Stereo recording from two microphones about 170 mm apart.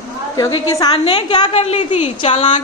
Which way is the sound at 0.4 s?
20° left (ahead or behind).